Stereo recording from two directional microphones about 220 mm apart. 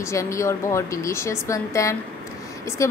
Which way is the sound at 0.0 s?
15° left (ahead or behind).